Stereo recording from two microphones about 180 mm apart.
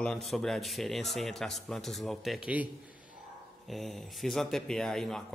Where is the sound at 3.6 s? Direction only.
Centre (ahead or behind).